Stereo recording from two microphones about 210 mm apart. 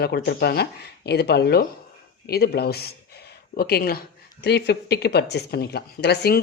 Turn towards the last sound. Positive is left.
turn(degrees=50)  # may be behind; listen again after turning